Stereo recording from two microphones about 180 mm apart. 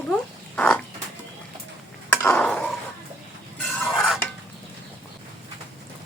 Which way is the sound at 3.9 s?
Centre (ahead or behind).